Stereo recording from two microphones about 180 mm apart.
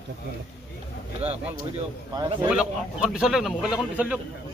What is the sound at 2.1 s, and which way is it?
Speech, 25° right (ahead or behind).